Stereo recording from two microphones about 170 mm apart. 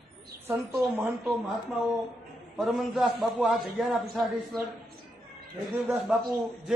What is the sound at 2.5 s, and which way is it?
A man's voice, 5° right (ahead or behind).